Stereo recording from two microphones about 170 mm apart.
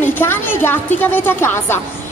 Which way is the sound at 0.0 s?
15° left (ahead or behind).